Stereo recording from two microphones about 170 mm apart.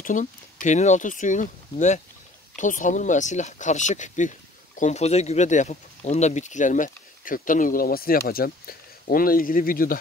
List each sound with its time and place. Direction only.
0.0 s speech: 50° left (ahead or behind)